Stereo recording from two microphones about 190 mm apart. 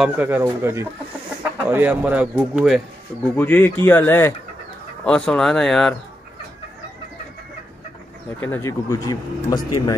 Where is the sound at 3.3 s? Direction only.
10° left (ahead or behind).